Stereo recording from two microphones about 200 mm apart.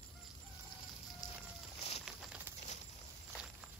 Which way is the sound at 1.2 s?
20° left (ahead or behind).